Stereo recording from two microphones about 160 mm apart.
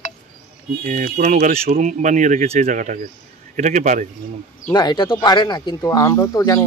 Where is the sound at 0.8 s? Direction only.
55° right (ahead or behind).